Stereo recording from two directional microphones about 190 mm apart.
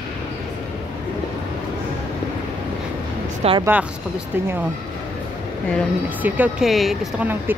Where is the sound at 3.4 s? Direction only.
30° right (ahead or behind).